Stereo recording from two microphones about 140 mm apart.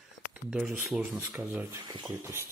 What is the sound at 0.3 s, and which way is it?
Speech, 5° right (ahead or behind).